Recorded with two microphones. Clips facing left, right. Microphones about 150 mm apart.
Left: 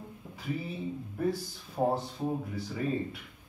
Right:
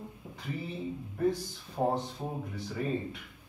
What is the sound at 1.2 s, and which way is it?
Speech, 5° left (ahead or behind).